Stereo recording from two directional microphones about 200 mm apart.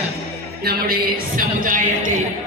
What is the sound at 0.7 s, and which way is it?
Music, 50° right (ahead or behind).